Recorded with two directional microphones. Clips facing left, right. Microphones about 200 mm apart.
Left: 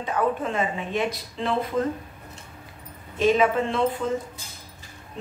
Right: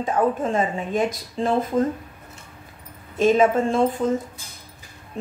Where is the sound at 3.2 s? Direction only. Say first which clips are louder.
Right 3 dB; 45° right (ahead or behind).